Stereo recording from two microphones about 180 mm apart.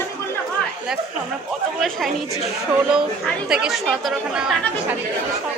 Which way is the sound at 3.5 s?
5° right (ahead or behind).